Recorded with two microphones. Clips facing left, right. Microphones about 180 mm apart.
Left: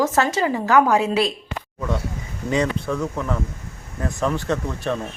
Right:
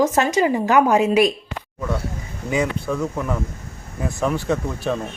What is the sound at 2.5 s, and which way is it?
Speech, 5° right (ahead or behind).